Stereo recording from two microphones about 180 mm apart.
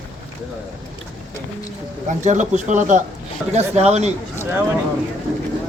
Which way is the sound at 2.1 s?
40° right (ahead or behind).